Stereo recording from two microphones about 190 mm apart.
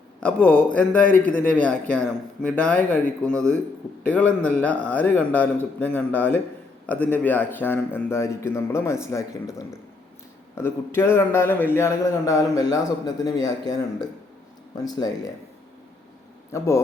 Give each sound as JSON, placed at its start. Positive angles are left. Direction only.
{"t": 0.2, "sound": "a man's voice", "side_deg": 5}
{"t": 16.5, "sound": "a man's voice", "side_deg": 15}